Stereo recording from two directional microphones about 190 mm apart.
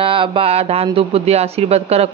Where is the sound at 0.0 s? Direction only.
25° right (ahead or behind).